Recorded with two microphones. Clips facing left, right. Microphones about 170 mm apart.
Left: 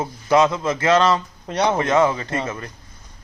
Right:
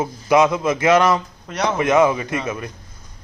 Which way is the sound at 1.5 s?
30° left (ahead or behind).